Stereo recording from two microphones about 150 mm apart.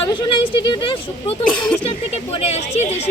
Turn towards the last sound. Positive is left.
turn(degrees=45)  # may be behind; listen again after turning